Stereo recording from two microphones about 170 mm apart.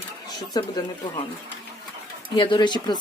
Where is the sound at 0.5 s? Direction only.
25° left (ahead or behind).